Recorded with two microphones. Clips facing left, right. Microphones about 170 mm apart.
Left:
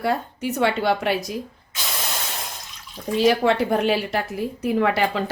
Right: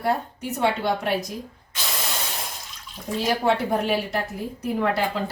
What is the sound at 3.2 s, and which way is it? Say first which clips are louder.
A woman's voice: left 4 dB; 80° left.